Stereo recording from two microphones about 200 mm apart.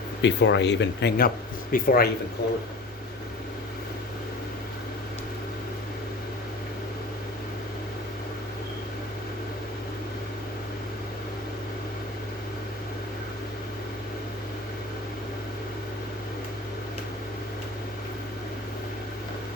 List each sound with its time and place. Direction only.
0.2 s speech: 60° left (ahead or behind)